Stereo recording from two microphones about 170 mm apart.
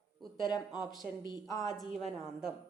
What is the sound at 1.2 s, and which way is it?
Speech, 25° left (ahead or behind).